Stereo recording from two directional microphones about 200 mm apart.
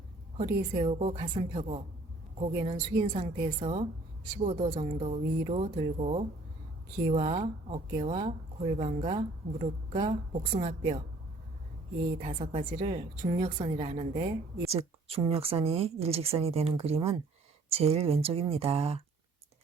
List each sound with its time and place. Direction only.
0.3 s speech: 30° right (ahead or behind)
12.2 s a woman's voice: 35° right (ahead or behind)